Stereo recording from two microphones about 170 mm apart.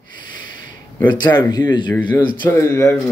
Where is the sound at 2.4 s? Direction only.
15° left (ahead or behind).